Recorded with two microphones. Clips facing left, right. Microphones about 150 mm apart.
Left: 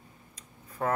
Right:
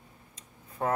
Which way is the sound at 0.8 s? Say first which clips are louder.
Even; 20° right (ahead or behind).